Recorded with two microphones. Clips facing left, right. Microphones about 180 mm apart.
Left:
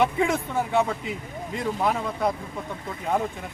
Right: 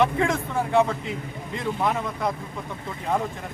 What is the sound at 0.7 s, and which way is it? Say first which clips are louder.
A man's voice: right 4 dB; centre (ahead or behind).